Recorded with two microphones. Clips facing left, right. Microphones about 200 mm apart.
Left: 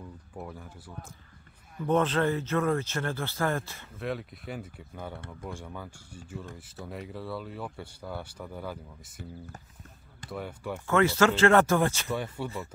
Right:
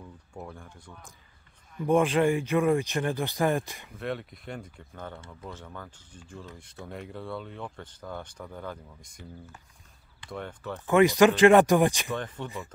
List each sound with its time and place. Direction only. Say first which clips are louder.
0.3 s speech: even; 5° left (ahead or behind)
1.9 s speech: right 3 dB; 10° right (ahead or behind)
4.0 s speech: even; centre (ahead or behind)
10.3 s speech: left 1 dB; 10° left (ahead or behind)
10.9 s speech: right 4 dB; 15° right (ahead or behind)
12.1 s speech: left 1 dB; 10° left (ahead or behind)